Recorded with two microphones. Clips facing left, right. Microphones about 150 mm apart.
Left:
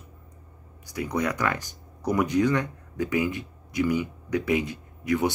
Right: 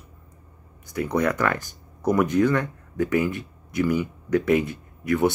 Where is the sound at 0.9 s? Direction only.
55° right (ahead or behind).